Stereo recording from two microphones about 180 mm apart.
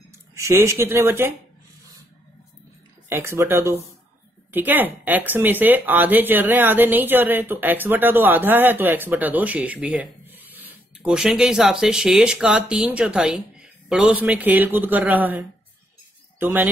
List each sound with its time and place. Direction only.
0.3 s speech: 15° right (ahead or behind)
3.1 s speech: 15° right (ahead or behind)